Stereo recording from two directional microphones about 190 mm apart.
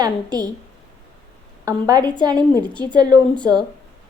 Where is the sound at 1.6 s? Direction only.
20° right (ahead or behind).